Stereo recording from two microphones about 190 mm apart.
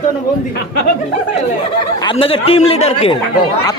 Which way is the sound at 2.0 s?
30° left (ahead or behind).